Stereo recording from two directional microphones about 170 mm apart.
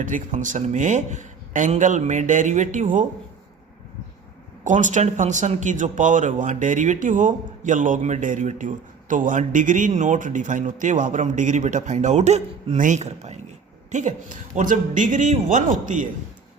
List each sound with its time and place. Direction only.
0.0 s speech: 50° right (ahead or behind)
4.6 s speech: 45° right (ahead or behind)